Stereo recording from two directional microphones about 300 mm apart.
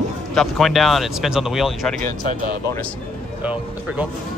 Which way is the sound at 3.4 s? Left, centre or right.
Centre.